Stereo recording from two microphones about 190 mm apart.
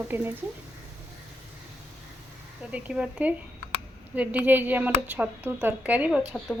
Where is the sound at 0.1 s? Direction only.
10° right (ahead or behind).